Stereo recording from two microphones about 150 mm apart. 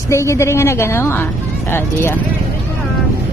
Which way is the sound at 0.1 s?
20° left (ahead or behind).